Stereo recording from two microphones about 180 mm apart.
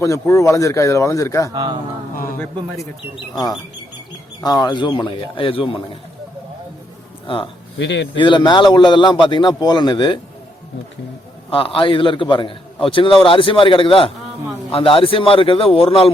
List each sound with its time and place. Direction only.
0.0 s speech: 15° left (ahead or behind)
1.5 s speech: 25° right (ahead or behind)
2.1 s speech: 50° left (ahead or behind)
4.4 s a man's voice: 20° left (ahead or behind)
7.8 s speech: 85° left
8.1 s a man's voice: 25° left (ahead or behind)
11.5 s a man's voice: 30° left (ahead or behind)